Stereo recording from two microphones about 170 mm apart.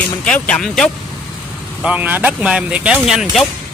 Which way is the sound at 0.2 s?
5° left (ahead or behind).